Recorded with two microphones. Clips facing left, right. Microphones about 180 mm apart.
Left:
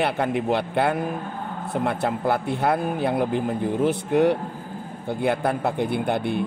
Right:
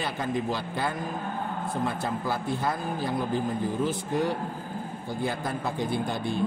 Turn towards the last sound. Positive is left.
turn(degrees=60)  # may be behind; listen again after turning